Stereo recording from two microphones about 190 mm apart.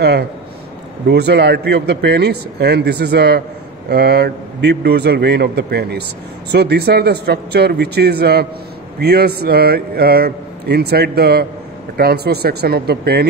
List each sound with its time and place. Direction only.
1.0 s speech: 60° right (ahead or behind)